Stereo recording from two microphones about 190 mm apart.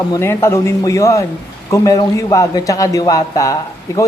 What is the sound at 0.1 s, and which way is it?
A man's voice, 15° left (ahead or behind).